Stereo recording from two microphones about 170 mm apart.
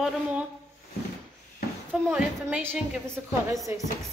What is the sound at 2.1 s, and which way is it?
Speech, 10° right (ahead or behind).